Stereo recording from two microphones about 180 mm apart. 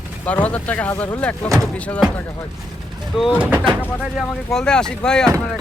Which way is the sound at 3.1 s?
5° right (ahead or behind).